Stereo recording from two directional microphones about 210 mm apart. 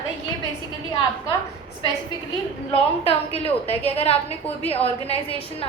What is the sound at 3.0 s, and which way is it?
A woman's voice, 30° left (ahead or behind).